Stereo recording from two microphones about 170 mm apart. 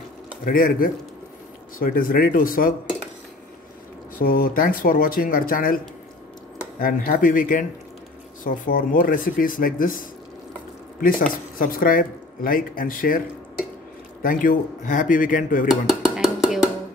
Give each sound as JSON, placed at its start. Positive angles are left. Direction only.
{"t": 0.5, "sound": "speech", "side_deg": 55}
{"t": 4.2, "sound": "speech", "side_deg": 55}
{"t": 6.8, "sound": "speech", "side_deg": 55}
{"t": 14.2, "sound": "speech", "side_deg": 55}
{"t": 15.7, "sound": "a sound", "side_deg": 0}